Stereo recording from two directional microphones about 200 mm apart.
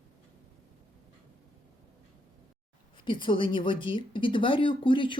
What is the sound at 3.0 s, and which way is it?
A woman's voice, 25° left (ahead or behind).